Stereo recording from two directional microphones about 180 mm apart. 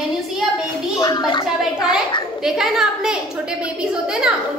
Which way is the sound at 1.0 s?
25° left (ahead or behind).